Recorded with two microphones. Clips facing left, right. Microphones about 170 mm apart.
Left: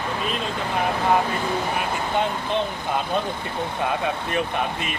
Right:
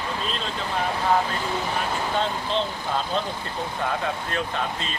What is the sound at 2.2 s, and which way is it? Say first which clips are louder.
Speech: left 2 dB; 15° left (ahead or behind).